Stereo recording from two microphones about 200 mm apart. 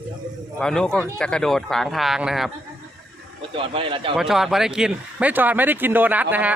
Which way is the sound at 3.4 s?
25° right (ahead or behind).